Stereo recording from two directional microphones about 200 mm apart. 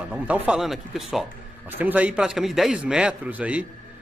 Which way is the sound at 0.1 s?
5° right (ahead or behind).